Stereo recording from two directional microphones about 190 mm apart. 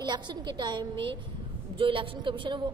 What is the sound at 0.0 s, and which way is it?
A woman's voice, 25° right (ahead or behind).